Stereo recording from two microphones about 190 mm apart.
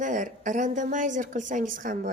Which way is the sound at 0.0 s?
40° right (ahead or behind).